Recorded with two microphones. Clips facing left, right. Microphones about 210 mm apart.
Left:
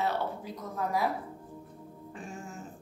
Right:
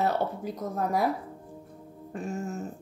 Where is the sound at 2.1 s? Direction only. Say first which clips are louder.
Right 10 dB; 40° right (ahead or behind).